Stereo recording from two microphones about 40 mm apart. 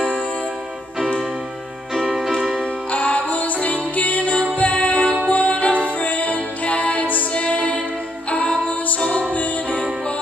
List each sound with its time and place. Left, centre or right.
2.9 s music: left
7.3 s music: left